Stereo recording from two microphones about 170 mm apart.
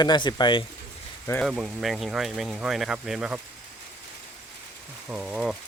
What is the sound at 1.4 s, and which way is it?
Speech, centre (ahead or behind).